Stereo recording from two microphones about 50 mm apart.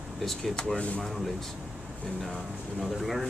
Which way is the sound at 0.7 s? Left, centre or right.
Left.